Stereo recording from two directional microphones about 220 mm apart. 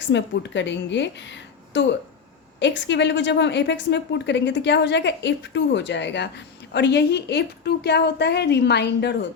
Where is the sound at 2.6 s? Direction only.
55° left (ahead or behind).